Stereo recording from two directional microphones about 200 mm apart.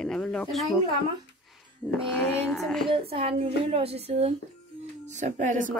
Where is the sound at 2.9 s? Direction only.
25° right (ahead or behind).